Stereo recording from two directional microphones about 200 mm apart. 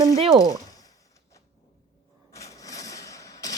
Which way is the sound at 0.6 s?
20° left (ahead or behind).